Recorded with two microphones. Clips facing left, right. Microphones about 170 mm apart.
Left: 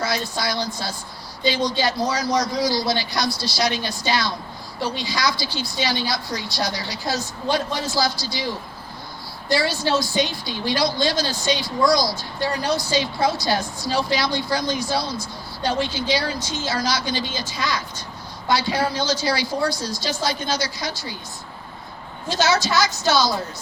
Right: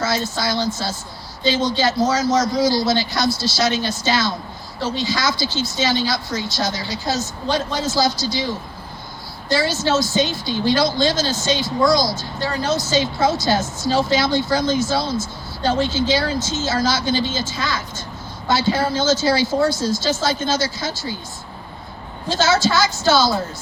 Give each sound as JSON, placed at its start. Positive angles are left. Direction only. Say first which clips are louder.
{"t": 0.0, "sound": "a woman's voice", "louder": "right 3 dB", "side_deg": -25}
{"t": 9.6, "sound": "a woman's voice", "louder": "right 3 dB", "side_deg": -20}
{"t": 18.9, "sound": "a woman's voice", "louder": "right 5 dB", "side_deg": -25}
{"t": 22.5, "sound": "speech", "louder": "right 3 dB", "side_deg": 0}